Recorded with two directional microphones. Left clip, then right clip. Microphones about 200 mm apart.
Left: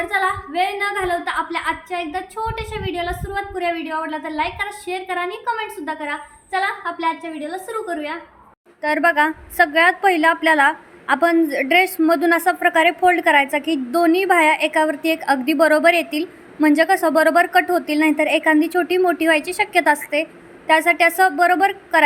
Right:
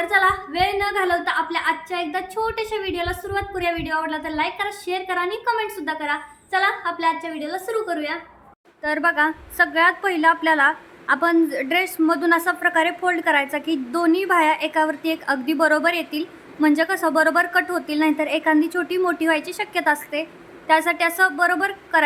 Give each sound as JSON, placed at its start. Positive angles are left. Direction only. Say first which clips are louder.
{"t": 0.0, "sound": "a woman's voice", "louder": "right 2 dB", "side_deg": -5}
{"t": 8.8, "sound": "a woman's voice", "louder": "left 3 dB", "side_deg": 10}